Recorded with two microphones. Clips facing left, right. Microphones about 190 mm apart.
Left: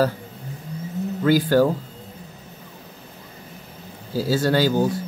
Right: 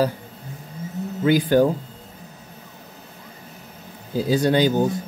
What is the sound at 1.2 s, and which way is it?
Speech, 20° right (ahead or behind).